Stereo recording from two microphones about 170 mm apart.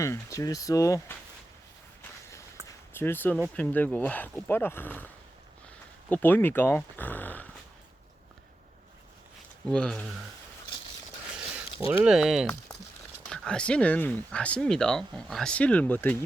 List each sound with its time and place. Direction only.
0.0 s speech: 20° left (ahead or behind)
2.6 s a sound: 15° right (ahead or behind)
2.9 s speech: 15° left (ahead or behind)
6.1 s speech: 10° left (ahead or behind)
9.6 s speech: 5° left (ahead or behind)
12.0 s speech: centre (ahead or behind)